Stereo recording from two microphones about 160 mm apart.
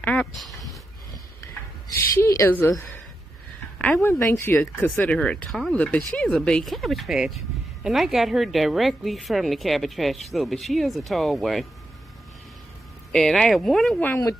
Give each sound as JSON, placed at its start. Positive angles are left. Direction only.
{"t": 0.0, "sound": "a sound", "side_deg": 5}
{"t": 2.1, "sound": "speech", "side_deg": 15}
{"t": 3.7, "sound": "speech", "side_deg": 10}
{"t": 13.1, "sound": "speech", "side_deg": 0}